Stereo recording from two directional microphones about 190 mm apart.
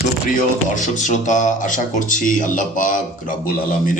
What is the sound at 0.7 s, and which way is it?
Speech, 40° left (ahead or behind).